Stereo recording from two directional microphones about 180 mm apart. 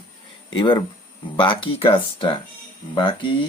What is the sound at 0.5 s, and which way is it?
Speech, 25° left (ahead or behind).